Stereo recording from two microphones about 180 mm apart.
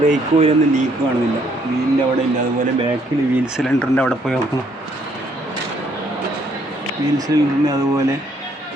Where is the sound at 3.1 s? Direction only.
20° right (ahead or behind).